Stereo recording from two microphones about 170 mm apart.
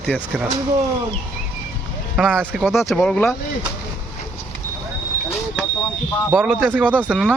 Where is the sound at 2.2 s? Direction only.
5° left (ahead or behind).